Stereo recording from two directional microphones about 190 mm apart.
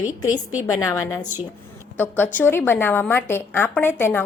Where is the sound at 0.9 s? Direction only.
15° left (ahead or behind).